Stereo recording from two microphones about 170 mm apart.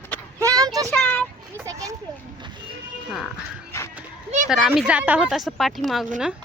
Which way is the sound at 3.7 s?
15° left (ahead or behind).